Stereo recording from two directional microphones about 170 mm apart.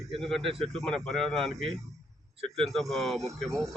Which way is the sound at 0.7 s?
Centre (ahead or behind).